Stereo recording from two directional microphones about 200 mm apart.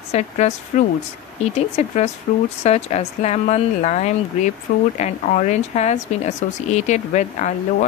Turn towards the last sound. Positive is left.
turn(degrees=35)  # may be behind; listen again after turning